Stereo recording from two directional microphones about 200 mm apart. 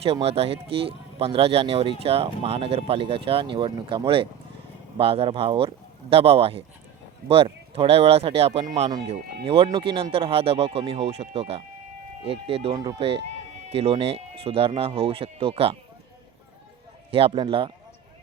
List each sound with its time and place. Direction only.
0.0 s speech: 30° right (ahead or behind)
17.1 s speech: 30° right (ahead or behind)